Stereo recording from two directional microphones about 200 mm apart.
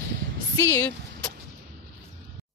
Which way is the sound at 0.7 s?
15° left (ahead or behind).